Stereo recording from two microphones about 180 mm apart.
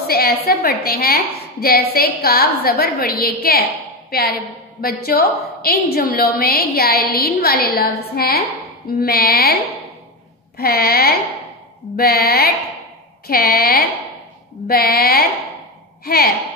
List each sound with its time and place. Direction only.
0.0 s a woman's voice: 60° left (ahead or behind)
10.6 s a woman's voice: 60° left (ahead or behind)